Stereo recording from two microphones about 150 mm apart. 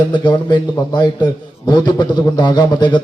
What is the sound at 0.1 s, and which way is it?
A man's voice, 30° left (ahead or behind).